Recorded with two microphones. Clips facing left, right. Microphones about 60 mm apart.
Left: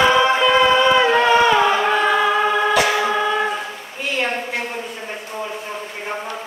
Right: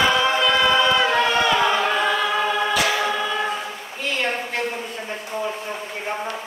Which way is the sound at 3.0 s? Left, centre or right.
Centre.